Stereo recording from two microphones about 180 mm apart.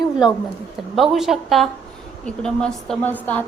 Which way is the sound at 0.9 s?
Centre (ahead or behind).